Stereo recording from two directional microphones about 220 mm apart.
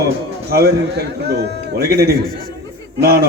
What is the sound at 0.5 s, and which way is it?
A man's voice, 45° right (ahead or behind).